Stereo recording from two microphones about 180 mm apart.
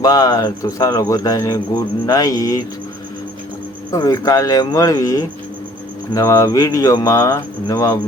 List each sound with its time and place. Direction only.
0.0 s speech: 20° left (ahead or behind)
3.9 s speech: 20° left (ahead or behind)